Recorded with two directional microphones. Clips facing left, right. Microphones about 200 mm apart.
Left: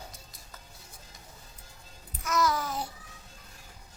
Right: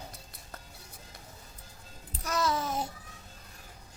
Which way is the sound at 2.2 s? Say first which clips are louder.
Left 2 dB; 30° right (ahead or behind).